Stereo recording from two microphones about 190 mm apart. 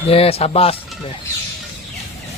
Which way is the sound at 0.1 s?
30° left (ahead or behind).